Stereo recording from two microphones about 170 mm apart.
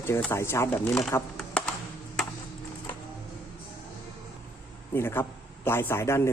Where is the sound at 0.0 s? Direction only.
15° left (ahead or behind).